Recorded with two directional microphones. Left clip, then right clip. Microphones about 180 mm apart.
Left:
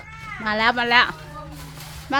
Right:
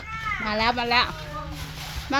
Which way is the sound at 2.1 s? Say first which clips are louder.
Left 3 dB; 5° left (ahead or behind).